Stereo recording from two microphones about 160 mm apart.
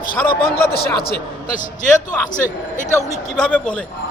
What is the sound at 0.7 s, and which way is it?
Speech, 75° left (ahead or behind).